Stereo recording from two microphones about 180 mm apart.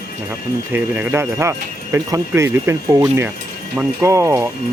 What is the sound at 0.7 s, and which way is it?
Speech, 10° right (ahead or behind).